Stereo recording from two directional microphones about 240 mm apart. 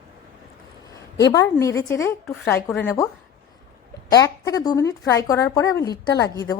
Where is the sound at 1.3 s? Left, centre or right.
Centre.